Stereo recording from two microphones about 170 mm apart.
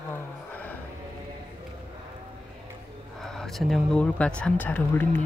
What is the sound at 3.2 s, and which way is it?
Speech, centre (ahead or behind).